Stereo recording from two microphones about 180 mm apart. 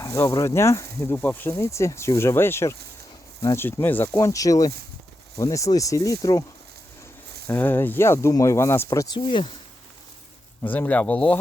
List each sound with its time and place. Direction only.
0.0 s speech: 15° left (ahead or behind)
7.4 s speech: 10° left (ahead or behind)
9.2 s speech: 30° left (ahead or behind)
10.6 s speech: 10° left (ahead or behind)